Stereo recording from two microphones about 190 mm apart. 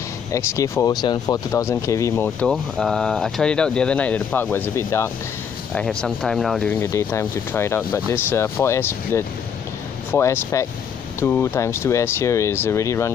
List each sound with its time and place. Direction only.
0.3 s speech: 15° left (ahead or behind)
2.4 s speech: centre (ahead or behind)
6.7 s speech: 15° left (ahead or behind)